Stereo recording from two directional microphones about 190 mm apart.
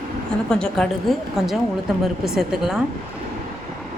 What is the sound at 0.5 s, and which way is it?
A woman's voice, 5° left (ahead or behind).